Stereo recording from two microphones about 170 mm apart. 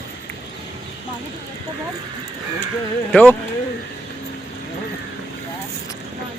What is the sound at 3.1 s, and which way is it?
Speech, 10° left (ahead or behind).